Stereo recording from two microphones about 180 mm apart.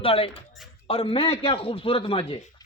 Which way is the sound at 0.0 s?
30° left (ahead or behind).